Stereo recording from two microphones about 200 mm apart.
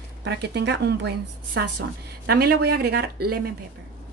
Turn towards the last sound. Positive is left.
turn(degrees=-50)  # may be behind; listen again after turning